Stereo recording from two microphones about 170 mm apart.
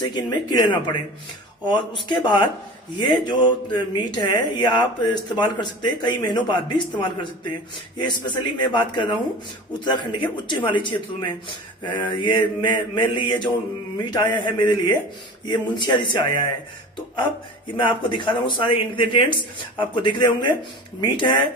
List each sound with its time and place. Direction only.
0.1 s speech: 25° left (ahead or behind)
17.7 s speech: 30° left (ahead or behind)